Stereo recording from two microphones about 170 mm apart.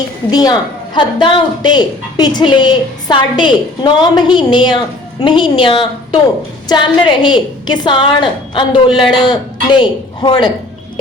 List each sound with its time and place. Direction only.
0.3 s a woman's voice: 25° left (ahead or behind)